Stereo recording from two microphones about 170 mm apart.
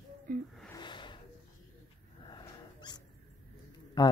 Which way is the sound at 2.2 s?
25° left (ahead or behind).